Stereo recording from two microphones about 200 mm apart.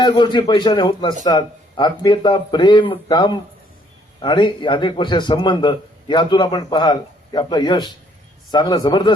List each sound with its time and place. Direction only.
0.0 s a man's voice: 25° left (ahead or behind)